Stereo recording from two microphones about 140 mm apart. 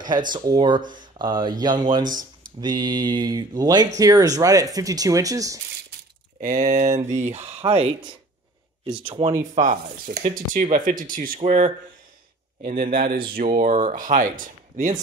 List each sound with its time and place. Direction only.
0.0 s speech: 30° right (ahead or behind)
2.0 s a sound: 70° right (ahead or behind)
2.6 s speech: 30° right (ahead or behind)
6.4 s speech: 65° right (ahead or behind); by 7.9 s 45° right (ahead or behind)
9.0 s speech: 40° right (ahead or behind)
9.6 s speech: 70° right (ahead or behind)
12.6 s a man's voice: 85° right
13.3 s speech: 70° right (ahead or behind)